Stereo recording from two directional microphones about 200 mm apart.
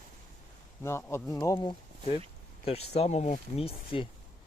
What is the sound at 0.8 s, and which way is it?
Speech, 10° left (ahead or behind).